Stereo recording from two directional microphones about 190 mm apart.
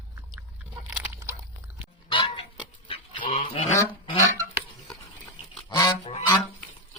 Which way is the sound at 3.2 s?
40° left (ahead or behind).